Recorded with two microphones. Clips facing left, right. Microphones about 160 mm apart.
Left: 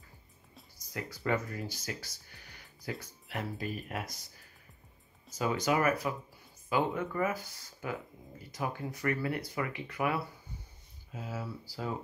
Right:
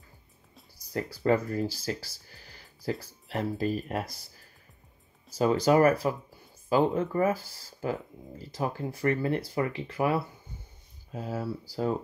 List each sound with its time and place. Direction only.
0.7 s speech: 35° right (ahead or behind)
5.4 s speech: 35° right (ahead or behind)
11.1 s speech: 40° right (ahead or behind)